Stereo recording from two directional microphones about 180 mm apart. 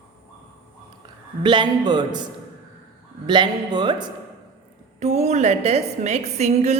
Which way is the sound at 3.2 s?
25° right (ahead or behind).